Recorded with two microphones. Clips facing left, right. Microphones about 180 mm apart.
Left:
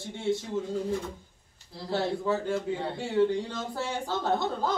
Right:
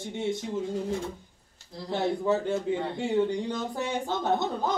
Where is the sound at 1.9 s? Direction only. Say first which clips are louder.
Right 2 dB; 20° right (ahead or behind).